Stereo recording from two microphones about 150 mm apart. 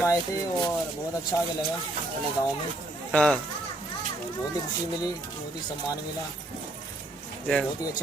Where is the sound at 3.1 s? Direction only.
5° left (ahead or behind).